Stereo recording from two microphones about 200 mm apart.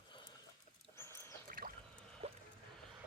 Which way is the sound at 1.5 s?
45° right (ahead or behind).